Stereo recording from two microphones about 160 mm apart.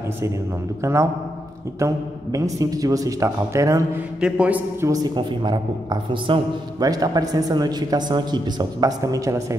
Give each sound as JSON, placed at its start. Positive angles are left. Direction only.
{"t": 1.8, "sound": "a man's voice", "side_deg": -20}
{"t": 4.2, "sound": "a man's voice", "side_deg": -10}
{"t": 4.8, "sound": "a man's voice", "side_deg": -25}